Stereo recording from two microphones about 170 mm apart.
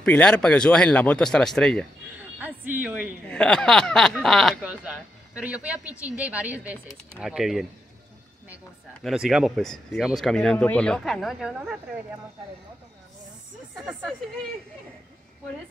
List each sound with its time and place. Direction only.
0.0 s speech: 5° left (ahead or behind)
2.4 s speech: 10° right (ahead or behind)
3.3 s speech: 5° left (ahead or behind)
9.0 s speech: centre (ahead or behind)